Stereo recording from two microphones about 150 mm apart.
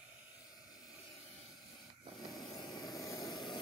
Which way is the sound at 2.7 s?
25° left (ahead or behind).